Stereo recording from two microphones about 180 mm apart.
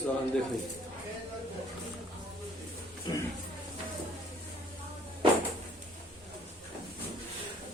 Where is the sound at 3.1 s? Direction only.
25° left (ahead or behind).